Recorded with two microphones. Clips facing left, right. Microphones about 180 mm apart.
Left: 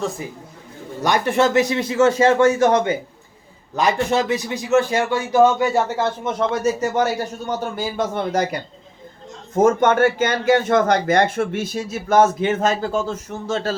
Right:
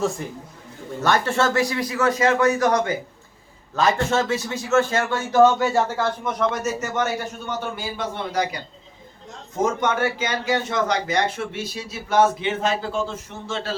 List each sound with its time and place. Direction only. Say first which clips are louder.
0.2 s a man's voice: left 1 dB; 5° left (ahead or behind)
1.0 s speech: left 3 dB; 15° left (ahead or behind); by 8.4 s 45° left (ahead or behind)
9.6 s speech: left 7 dB; 50° left (ahead or behind)